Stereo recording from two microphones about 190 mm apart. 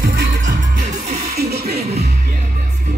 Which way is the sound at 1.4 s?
55° right (ahead or behind).